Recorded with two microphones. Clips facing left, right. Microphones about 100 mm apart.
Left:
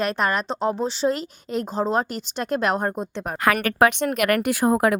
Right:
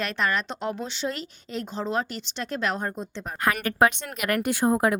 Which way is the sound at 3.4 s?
80° left.